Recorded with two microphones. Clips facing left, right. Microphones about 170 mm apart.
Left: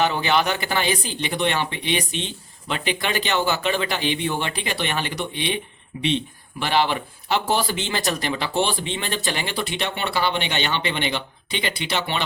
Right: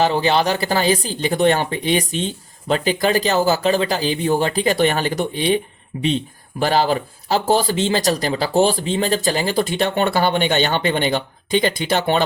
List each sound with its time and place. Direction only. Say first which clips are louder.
0.0 s speech: right 4 dB; 35° right (ahead or behind)
6.6 s speech: right 4 dB; 40° right (ahead or behind)